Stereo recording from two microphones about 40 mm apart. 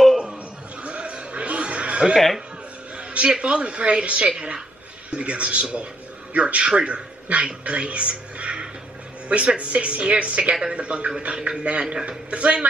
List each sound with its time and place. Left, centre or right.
0.8 s a sound: right
2.1 s speech: centre
3.0 s a woman's voice: right